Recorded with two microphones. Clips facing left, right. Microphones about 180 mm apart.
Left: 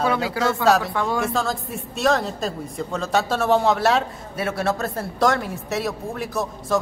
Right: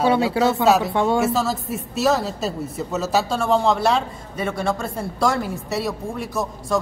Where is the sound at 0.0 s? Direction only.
25° right (ahead or behind).